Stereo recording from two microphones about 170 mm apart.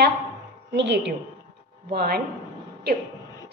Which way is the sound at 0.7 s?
90° right.